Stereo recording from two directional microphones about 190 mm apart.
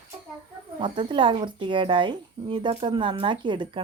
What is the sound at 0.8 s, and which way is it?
Speech, 25° right (ahead or behind).